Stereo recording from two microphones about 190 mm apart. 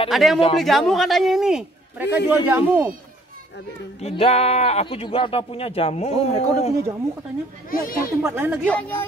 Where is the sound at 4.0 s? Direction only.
35° left (ahead or behind).